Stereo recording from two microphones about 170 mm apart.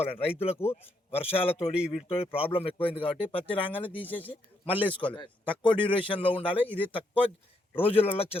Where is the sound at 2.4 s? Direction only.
35° left (ahead or behind).